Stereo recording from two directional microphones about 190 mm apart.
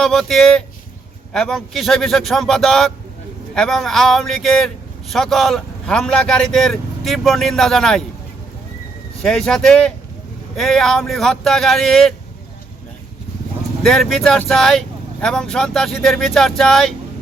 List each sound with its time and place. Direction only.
0.0 s speech: centre (ahead or behind)
9.2 s speech: 5° left (ahead or behind)
13.8 s speech: centre (ahead or behind)